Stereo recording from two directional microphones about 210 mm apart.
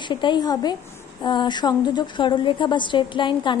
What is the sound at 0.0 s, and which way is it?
A woman's voice, 20° left (ahead or behind).